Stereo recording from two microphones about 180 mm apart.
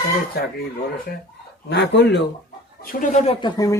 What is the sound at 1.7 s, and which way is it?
Speech, 75° left (ahead or behind).